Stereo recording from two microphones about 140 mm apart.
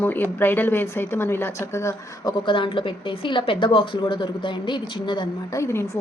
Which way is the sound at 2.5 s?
35° left (ahead or behind).